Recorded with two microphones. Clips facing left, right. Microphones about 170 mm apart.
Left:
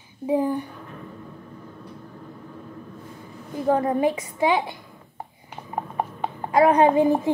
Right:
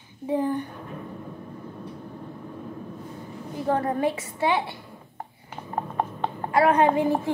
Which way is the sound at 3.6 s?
15° left (ahead or behind).